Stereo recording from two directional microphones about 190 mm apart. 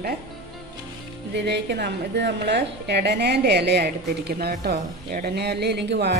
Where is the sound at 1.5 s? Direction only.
60° right (ahead or behind).